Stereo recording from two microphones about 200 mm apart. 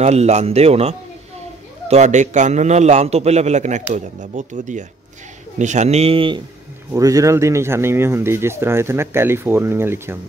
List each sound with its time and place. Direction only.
0.0 s a man's voice: 35° right (ahead or behind); by 10.1 s 10° right (ahead or behind)